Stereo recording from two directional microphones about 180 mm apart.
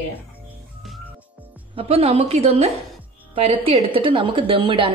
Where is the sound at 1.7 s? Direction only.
35° right (ahead or behind).